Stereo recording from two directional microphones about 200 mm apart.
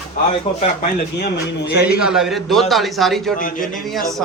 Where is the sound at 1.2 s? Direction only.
60° left (ahead or behind).